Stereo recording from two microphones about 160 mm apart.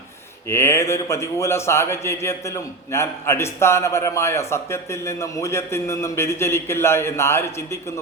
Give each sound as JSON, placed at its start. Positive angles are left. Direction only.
{"t": 0.4, "sound": "a man's voice", "side_deg": 15}